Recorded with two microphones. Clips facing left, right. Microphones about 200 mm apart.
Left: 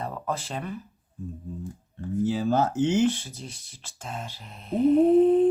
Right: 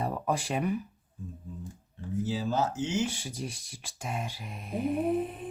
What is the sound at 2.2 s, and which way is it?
Speech, 55° left (ahead or behind).